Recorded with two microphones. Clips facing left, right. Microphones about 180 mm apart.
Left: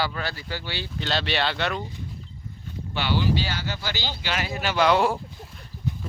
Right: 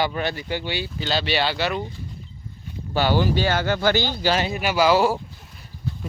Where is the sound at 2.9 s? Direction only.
45° right (ahead or behind).